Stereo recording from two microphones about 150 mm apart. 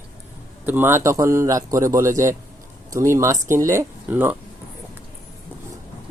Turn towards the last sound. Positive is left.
turn(degrees=-15)  # may be behind; listen again after turning